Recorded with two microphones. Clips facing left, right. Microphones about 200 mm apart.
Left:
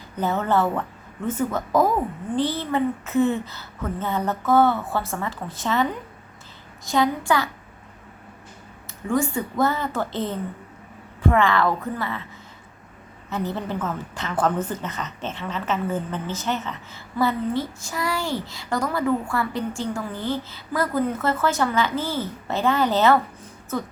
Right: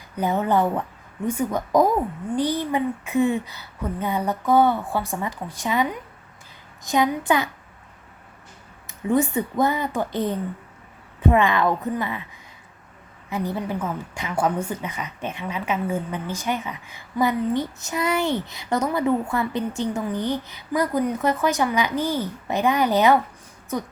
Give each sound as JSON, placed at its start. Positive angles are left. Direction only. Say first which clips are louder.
{"t": 0.2, "sound": "a woman's voice", "louder": "right 1 dB", "side_deg": -15}
{"t": 8.9, "sound": "a woman's voice", "louder": "right 2 dB", "side_deg": -20}
{"t": 13.3, "sound": "a woman's voice", "louder": "right 1 dB", "side_deg": -10}